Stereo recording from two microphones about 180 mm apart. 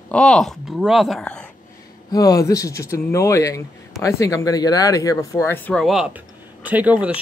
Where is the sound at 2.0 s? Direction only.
20° left (ahead or behind).